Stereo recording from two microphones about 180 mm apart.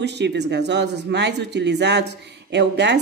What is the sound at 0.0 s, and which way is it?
Speech, 70° right (ahead or behind).